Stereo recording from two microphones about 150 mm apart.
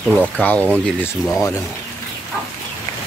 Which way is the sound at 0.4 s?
10° left (ahead or behind).